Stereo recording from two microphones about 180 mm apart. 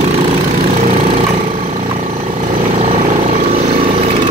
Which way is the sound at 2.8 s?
35° right (ahead or behind).